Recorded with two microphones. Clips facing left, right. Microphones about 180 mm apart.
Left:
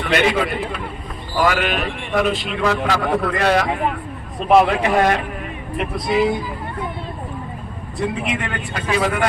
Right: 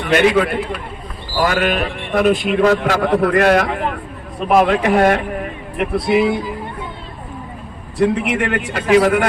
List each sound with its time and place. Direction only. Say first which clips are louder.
0.0 s a man's voice: right 4 dB; 50° right (ahead or behind)
5.8 s a man's voice: right 4 dB; 65° right (ahead or behind)
7.9 s a man's voice: right 7 dB; 75° right (ahead or behind)